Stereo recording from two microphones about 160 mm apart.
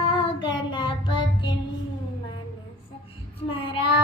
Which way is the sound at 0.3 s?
30° left (ahead or behind).